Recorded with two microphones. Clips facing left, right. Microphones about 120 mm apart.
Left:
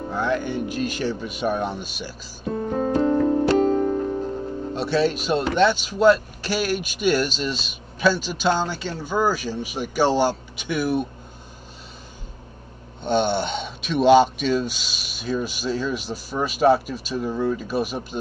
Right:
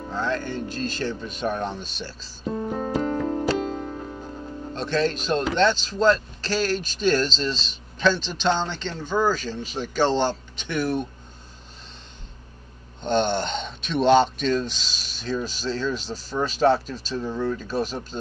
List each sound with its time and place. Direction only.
0.1 s speech: 15° left (ahead or behind)
3.0 s music: 10° left (ahead or behind)
3.5 s music: 40° left (ahead or behind)
3.8 s music: 20° left (ahead or behind)
4.7 s speech: 10° left (ahead or behind)
13.0 s speech: 10° left (ahead or behind)